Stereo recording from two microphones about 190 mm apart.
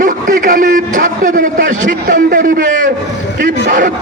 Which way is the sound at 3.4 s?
45° right (ahead or behind).